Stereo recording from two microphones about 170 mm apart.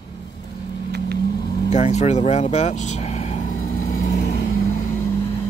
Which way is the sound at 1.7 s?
40° left (ahead or behind).